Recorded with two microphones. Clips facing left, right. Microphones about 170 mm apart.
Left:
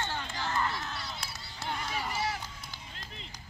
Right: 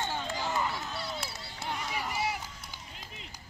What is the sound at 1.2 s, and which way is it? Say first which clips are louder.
Run: right 3 dB; 5° right (ahead or behind).